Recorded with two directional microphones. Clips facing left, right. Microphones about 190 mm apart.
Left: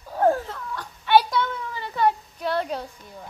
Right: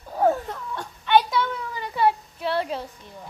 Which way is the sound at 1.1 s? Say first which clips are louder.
Left 1 dB; 10° left (ahead or behind).